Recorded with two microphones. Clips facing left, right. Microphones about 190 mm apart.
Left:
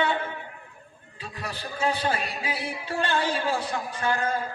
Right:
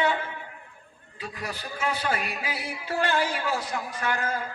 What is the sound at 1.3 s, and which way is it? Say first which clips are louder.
Speech: left 1 dB; 30° left (ahead or behind).